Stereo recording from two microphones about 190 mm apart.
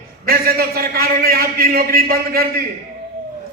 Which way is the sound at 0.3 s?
50° right (ahead or behind).